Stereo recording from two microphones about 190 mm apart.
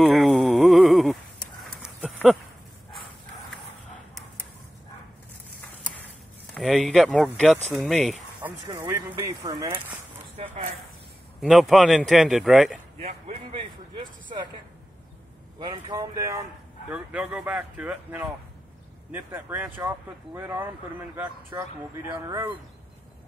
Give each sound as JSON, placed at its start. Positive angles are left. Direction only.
{"t": 0.0, "sound": "a sound", "side_deg": 0}
{"t": 1.8, "sound": "dog", "side_deg": -5}
{"t": 6.5, "sound": "speech", "side_deg": 0}
{"t": 8.4, "sound": "speech", "side_deg": -15}
{"t": 10.3, "sound": "speech", "side_deg": -35}
{"t": 11.3, "sound": "speech", "side_deg": 0}
{"t": 13.0, "sound": "a sound", "side_deg": -30}
{"t": 15.6, "sound": "speech", "side_deg": -20}
{"t": 16.9, "sound": "speech", "side_deg": -5}
{"t": 21.5, "sound": "speech", "side_deg": -20}